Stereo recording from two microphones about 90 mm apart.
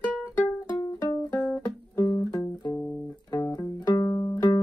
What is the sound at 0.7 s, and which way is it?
Music, 50° left (ahead or behind).